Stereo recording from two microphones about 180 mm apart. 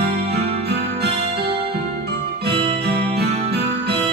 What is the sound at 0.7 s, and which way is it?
Music, 65° right (ahead or behind).